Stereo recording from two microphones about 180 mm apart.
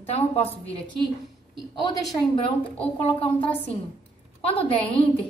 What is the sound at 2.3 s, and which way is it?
A woman's voice, 30° left (ahead or behind).